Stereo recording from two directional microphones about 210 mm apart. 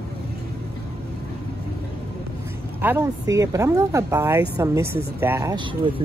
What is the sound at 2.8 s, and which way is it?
Speech, 10° right (ahead or behind).